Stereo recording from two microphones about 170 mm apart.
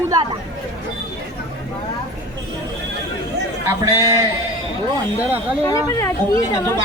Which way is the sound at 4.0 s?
20° right (ahead or behind).